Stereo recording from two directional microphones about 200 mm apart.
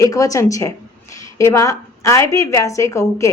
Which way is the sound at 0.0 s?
15° left (ahead or behind).